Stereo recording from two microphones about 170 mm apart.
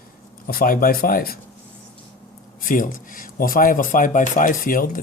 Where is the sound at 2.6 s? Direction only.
50° left (ahead or behind).